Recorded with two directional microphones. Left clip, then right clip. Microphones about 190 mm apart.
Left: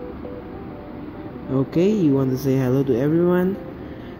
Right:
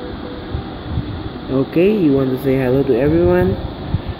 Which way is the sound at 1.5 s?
5° left (ahead or behind).